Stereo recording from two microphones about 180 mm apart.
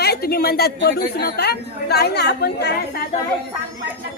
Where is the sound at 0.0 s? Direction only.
60° left (ahead or behind).